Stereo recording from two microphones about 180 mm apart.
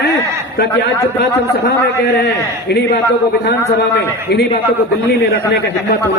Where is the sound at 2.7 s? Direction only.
65° left (ahead or behind).